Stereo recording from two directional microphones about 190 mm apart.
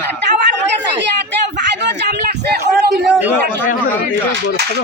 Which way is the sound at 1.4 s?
65° right (ahead or behind).